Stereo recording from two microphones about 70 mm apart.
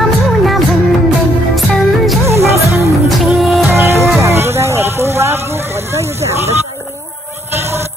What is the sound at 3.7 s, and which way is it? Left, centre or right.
Music, right.